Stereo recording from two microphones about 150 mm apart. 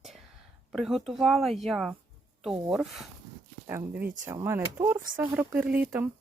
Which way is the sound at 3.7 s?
15° right (ahead or behind).